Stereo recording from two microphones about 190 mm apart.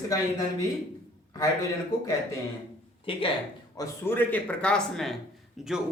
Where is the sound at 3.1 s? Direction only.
30° left (ahead or behind).